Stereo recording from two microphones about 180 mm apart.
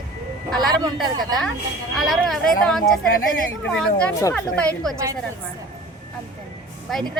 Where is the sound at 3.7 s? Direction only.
5° left (ahead or behind).